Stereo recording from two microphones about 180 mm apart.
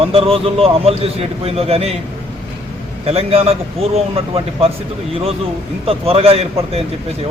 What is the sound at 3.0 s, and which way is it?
A man's voice, 35° right (ahead or behind).